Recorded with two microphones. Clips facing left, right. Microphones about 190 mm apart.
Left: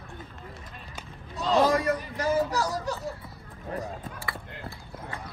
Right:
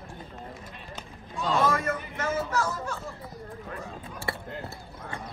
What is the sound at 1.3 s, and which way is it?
A man's voice, 40° left (ahead or behind).